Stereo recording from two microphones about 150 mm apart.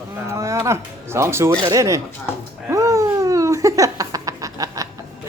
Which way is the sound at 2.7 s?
20° right (ahead or behind).